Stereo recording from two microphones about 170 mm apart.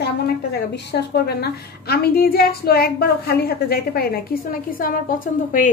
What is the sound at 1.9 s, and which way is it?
A woman's voice, 65° left (ahead or behind).